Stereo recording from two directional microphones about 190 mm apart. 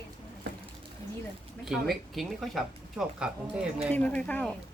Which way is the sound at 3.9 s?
5° left (ahead or behind).